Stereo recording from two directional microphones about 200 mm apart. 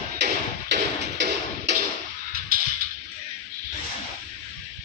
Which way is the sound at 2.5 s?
45° right (ahead or behind).